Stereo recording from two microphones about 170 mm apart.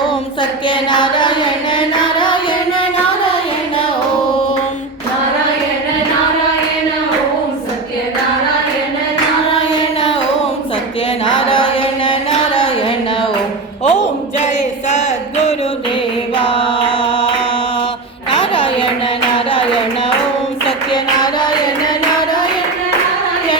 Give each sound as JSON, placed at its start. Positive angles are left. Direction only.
{"t": 0.7, "sound": "music", "side_deg": 30}
{"t": 11.3, "sound": "mantra", "side_deg": 30}
{"t": 13.8, "sound": "a sound", "side_deg": 45}
{"t": 16.4, "sound": "chant", "side_deg": 30}
{"t": 18.5, "sound": "a sound", "side_deg": 30}
{"t": 20.7, "sound": "music", "side_deg": 25}